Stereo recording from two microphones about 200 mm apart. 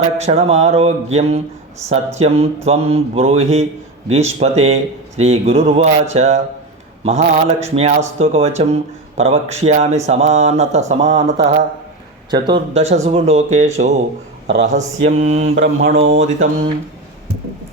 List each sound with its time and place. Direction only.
0.2 s speech: 30° right (ahead or behind)